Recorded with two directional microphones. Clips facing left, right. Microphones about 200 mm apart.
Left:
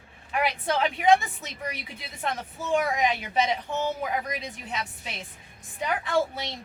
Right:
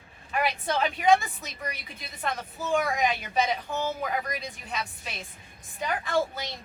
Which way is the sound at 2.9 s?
20° left (ahead or behind).